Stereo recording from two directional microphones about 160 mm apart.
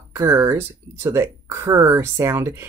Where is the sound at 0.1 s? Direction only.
15° right (ahead or behind).